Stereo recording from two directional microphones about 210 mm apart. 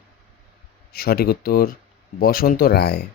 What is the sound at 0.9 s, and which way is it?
Speech, 50° left (ahead or behind).